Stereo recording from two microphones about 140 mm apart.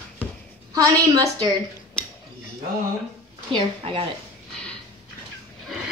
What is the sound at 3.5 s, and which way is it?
Speech, 40° right (ahead or behind).